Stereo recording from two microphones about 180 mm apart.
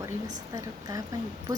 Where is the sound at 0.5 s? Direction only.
20° right (ahead or behind).